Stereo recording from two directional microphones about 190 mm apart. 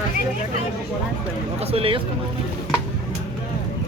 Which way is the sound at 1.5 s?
30° right (ahead or behind).